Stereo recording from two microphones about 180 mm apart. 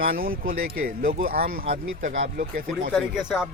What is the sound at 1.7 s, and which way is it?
Speech, 45° right (ahead or behind).